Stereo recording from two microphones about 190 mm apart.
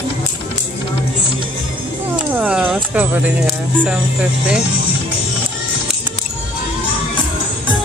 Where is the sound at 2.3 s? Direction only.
5° right (ahead or behind).